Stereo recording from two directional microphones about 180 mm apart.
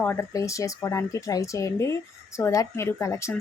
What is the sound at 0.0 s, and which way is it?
Speech, 10° left (ahead or behind).